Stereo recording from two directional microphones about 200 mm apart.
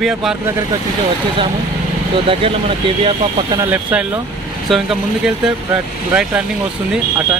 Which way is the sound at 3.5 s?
10° right (ahead or behind).